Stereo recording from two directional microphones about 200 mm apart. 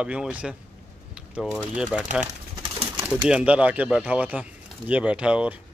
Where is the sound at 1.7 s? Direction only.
5° right (ahead or behind).